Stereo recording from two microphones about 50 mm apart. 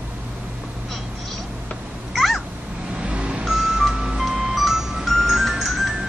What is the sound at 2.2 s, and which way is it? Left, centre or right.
Cat, centre.